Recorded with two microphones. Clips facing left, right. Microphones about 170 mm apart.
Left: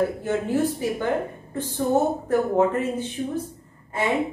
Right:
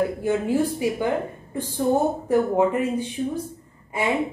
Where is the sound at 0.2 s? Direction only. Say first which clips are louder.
Right 1 dB; 10° right (ahead or behind).